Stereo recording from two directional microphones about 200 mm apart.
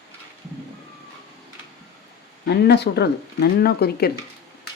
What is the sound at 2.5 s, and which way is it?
Speech, 55° left (ahead or behind).